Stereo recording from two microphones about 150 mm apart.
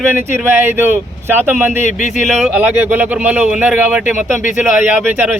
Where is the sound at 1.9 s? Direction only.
55° left (ahead or behind).